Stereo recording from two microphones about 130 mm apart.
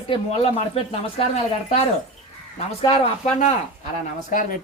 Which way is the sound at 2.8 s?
55° left (ahead or behind).